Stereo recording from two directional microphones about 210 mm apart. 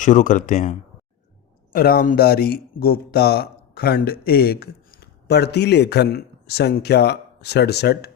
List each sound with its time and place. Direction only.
0.0 s speech: 35° left (ahead or behind)